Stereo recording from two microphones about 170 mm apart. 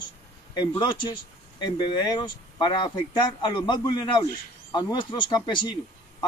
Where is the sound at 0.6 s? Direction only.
25° left (ahead or behind).